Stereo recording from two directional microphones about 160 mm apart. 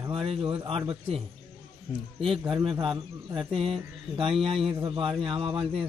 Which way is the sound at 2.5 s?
35° right (ahead or behind).